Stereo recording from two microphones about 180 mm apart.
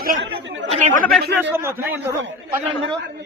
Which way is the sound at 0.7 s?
40° right (ahead or behind).